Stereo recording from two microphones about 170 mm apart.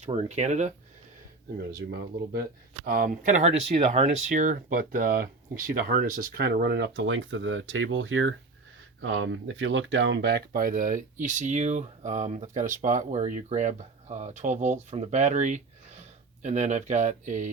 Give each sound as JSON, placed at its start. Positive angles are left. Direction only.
{"t": 0.0, "sound": "speech", "side_deg": -35}
{"t": 1.9, "sound": "speech", "side_deg": -70}